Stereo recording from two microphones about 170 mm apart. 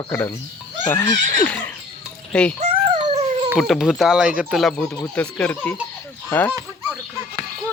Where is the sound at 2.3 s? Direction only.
5° left (ahead or behind).